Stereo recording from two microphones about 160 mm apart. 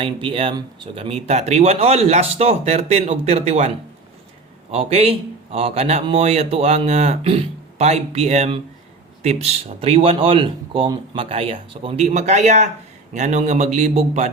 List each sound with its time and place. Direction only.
0.0 s a man's voice: 35° right (ahead or behind)
4.7 s a man's voice: 40° right (ahead or behind)